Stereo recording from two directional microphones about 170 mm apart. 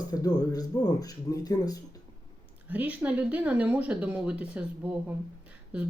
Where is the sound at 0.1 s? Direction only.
20° left (ahead or behind).